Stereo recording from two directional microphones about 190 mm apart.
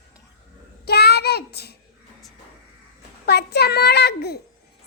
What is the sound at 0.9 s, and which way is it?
Child singing, 55° left (ahead or behind).